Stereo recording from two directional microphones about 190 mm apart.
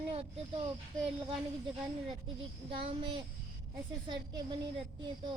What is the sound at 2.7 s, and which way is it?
Speech, 25° right (ahead or behind).